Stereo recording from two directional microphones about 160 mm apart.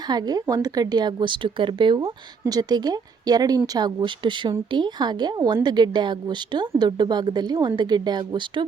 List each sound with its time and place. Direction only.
0.1 s speech: 25° right (ahead or behind)